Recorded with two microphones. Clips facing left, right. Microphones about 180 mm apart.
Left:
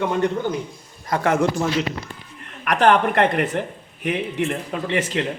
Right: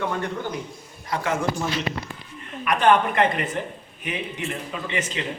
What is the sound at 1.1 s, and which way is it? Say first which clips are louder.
Speech: left 6 dB; 65° left (ahead or behind).